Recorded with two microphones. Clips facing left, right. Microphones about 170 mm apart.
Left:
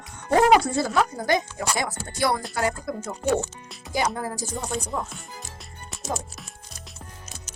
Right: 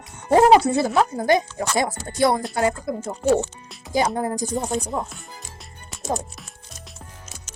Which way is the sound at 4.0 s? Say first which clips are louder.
Right 5 dB; 20° right (ahead or behind).